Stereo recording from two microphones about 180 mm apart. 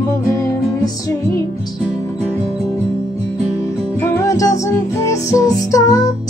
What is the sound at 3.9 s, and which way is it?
Music, 15° left (ahead or behind).